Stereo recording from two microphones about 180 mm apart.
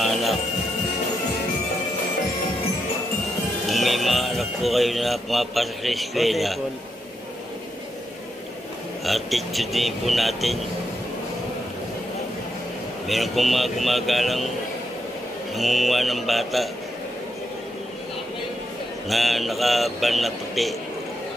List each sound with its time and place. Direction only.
0.0 s speech: centre (ahead or behind)
3.6 s speech: centre (ahead or behind)
9.0 s speech: centre (ahead or behind)
13.0 s speech: centre (ahead or behind)
15.5 s speech: centre (ahead or behind)
19.0 s speech: centre (ahead or behind)